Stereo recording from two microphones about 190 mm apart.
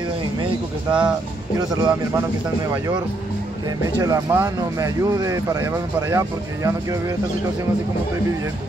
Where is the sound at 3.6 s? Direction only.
20° right (ahead or behind).